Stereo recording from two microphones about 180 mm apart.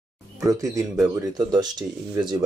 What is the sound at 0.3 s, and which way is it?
Speech, 20° right (ahead or behind).